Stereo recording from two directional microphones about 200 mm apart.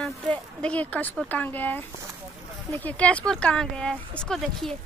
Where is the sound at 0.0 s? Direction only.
5° left (ahead or behind).